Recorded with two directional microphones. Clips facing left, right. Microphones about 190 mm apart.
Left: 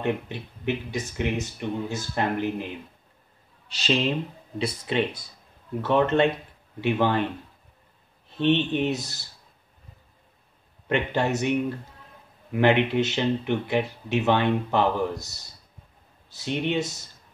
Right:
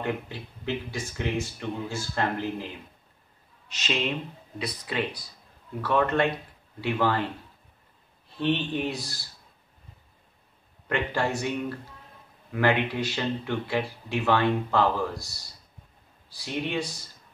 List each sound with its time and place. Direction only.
0.0 s speech: 20° left (ahead or behind)
3.6 s speech: 30° left (ahead or behind)
8.4 s speech: 25° left (ahead or behind)
10.9 s speech: 20° left (ahead or behind)
12.5 s speech: 20° left (ahead or behind)